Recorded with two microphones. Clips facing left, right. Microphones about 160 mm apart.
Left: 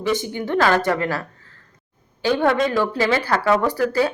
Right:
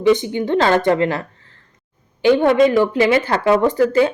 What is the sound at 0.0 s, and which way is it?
Speech, 20° right (ahead or behind).